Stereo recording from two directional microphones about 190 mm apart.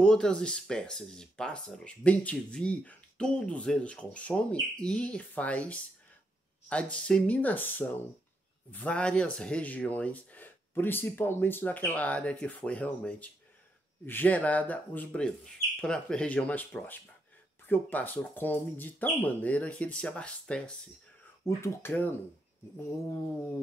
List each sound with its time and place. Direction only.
0.0 s speech: 5° left (ahead or behind)